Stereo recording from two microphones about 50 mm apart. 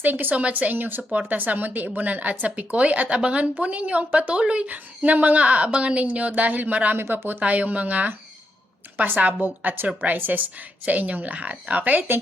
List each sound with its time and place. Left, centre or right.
0.0 s a woman's voice: right
6.9 s speech: right
7.3 s speech: right